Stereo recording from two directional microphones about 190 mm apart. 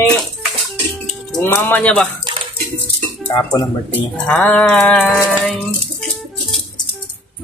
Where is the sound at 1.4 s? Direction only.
10° left (ahead or behind).